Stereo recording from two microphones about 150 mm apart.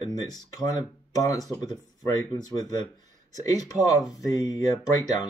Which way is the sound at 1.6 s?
25° left (ahead or behind).